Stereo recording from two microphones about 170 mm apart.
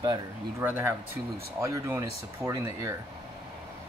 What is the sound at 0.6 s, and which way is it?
A man's voice, 10° right (ahead or behind).